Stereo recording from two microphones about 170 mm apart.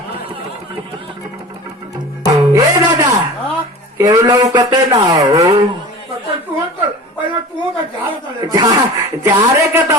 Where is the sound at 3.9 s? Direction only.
20° right (ahead or behind).